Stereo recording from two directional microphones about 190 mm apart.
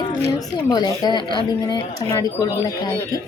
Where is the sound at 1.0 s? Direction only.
25° left (ahead or behind).